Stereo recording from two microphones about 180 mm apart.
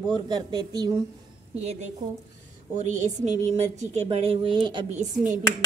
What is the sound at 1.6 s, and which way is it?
A woman's voice, 40° right (ahead or behind).